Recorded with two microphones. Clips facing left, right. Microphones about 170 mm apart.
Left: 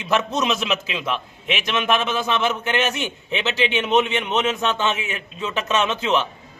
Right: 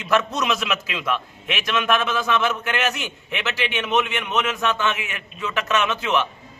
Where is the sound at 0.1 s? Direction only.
25° left (ahead or behind).